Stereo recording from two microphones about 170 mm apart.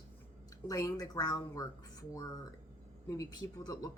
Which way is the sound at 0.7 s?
20° left (ahead or behind).